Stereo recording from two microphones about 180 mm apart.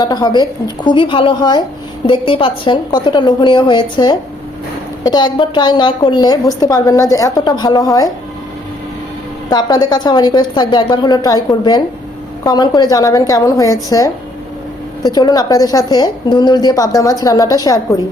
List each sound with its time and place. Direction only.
0.0 s a woman's voice: 20° left (ahead or behind)
9.5 s a woman's voice: 25° left (ahead or behind)
15.0 s a woman's voice: 20° left (ahead or behind)